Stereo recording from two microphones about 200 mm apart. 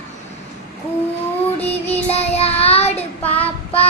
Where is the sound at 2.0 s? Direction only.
30° left (ahead or behind).